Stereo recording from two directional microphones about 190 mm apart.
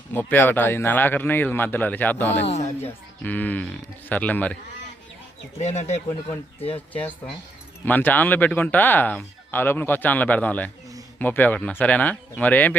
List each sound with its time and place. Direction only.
0.1 s speech: 10° left (ahead or behind)
5.5 s speech: 35° left (ahead or behind)
6.7 s speech: 10° left (ahead or behind)